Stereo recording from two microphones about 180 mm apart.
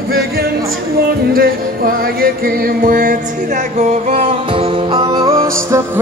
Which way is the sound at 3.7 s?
40° right (ahead or behind).